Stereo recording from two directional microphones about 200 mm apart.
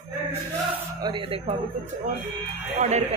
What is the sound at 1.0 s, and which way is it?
Speech, 25° right (ahead or behind).